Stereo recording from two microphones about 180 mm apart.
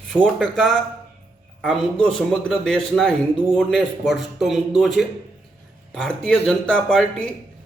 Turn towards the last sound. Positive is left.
turn(degrees=5)  # may be behind; listen again after turning